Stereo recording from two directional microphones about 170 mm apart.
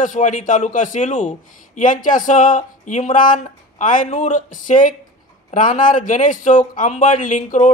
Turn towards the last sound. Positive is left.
turn(degrees=45)  # may be behind; listen again after turning